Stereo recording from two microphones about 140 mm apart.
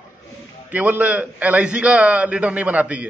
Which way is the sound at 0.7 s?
10° right (ahead or behind).